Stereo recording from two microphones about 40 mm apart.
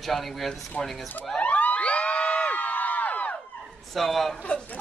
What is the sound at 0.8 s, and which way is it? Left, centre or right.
Speech, left.